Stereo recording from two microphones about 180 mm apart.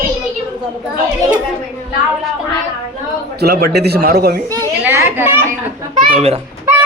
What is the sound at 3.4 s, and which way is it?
A man's voice, 65° right (ahead or behind).